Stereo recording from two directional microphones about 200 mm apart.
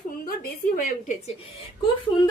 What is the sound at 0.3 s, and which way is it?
Speech, 45° left (ahead or behind).